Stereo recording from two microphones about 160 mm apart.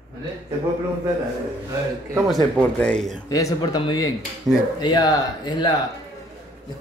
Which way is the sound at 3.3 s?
20° left (ahead or behind).